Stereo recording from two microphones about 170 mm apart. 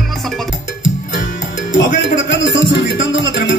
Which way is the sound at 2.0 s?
90° left.